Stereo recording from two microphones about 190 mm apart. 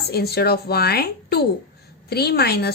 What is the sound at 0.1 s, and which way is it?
A woman's voice, 55° left (ahead or behind).